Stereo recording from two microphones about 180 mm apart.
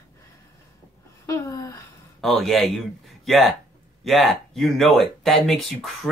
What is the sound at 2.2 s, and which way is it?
A man's voice, centre (ahead or behind).